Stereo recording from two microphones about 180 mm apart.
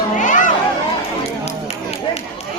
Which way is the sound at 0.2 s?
45° left (ahead or behind).